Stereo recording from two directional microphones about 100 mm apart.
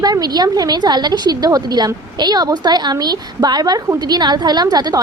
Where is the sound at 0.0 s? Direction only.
40° right (ahead or behind).